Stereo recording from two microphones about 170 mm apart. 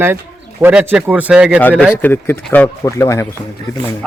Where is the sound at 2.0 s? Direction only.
10° left (ahead or behind).